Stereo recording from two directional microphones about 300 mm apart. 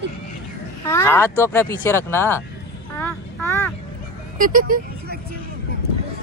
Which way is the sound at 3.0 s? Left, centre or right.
Centre.